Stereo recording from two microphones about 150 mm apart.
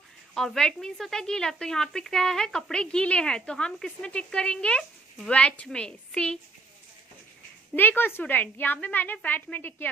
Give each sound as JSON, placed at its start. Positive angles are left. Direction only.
{"t": 0.3, "sound": "a woman's voice", "side_deg": 5}
{"t": 7.7, "sound": "a woman's voice", "side_deg": 15}